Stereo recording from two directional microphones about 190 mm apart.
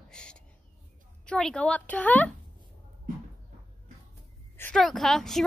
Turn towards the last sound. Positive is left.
turn(degrees=0)  # may be behind; listen again after turning